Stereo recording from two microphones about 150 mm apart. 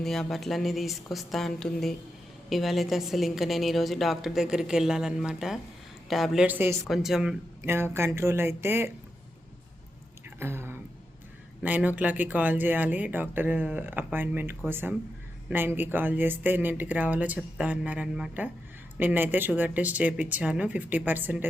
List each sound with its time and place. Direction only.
0.0 s a woman's voice: centre (ahead or behind)
6.8 s a woman's voice: centre (ahead or behind)
7.6 s speech: 15° right (ahead or behind)
10.2 s a sound: 15° right (ahead or behind)
11.6 s speech: 10° right (ahead or behind)